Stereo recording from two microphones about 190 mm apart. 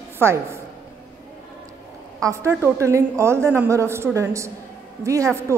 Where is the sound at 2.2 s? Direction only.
15° right (ahead or behind).